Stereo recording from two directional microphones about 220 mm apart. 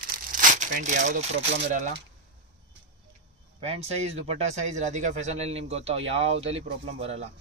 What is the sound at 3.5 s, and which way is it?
Speech, 25° right (ahead or behind).